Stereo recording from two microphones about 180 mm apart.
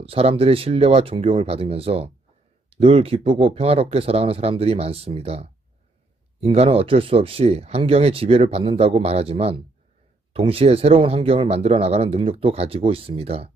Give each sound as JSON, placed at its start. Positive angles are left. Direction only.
{"t": 0.0, "sound": "speech", "side_deg": -35}